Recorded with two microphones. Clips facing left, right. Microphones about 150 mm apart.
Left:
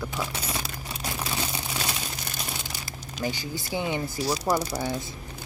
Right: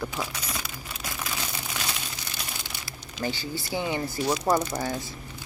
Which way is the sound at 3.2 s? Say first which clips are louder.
Even; 15° left (ahead or behind).